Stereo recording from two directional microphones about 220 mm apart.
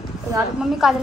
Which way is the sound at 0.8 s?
Centre (ahead or behind).